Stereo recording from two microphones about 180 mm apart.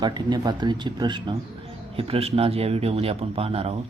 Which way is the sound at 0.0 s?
25° right (ahead or behind).